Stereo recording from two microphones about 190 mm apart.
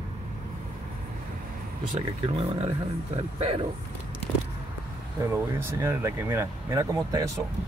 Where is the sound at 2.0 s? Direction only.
35° right (ahead or behind).